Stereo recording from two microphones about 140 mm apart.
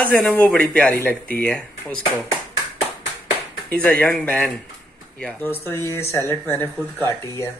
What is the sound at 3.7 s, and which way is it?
Speech, 10° left (ahead or behind).